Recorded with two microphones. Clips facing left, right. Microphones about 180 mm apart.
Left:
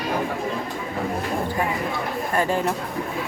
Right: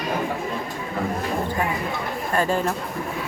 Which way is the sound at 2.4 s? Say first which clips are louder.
Even; 15° left (ahead or behind).